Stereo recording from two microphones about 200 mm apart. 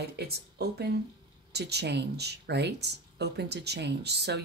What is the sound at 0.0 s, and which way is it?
Speech, 55° right (ahead or behind).